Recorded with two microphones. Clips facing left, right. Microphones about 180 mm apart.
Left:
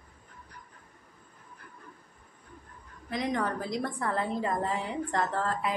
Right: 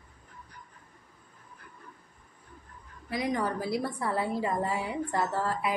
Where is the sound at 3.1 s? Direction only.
5° right (ahead or behind).